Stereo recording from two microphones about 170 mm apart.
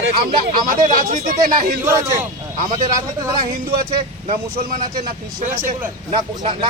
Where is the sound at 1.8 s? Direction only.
15° right (ahead or behind).